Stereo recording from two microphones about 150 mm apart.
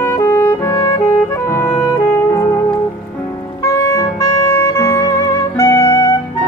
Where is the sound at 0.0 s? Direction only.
20° left (ahead or behind).